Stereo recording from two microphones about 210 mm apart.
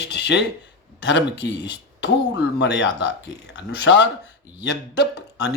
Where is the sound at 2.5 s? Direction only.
55° left (ahead or behind).